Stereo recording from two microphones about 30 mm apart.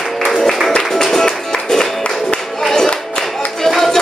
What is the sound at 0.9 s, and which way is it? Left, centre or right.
Music, centre.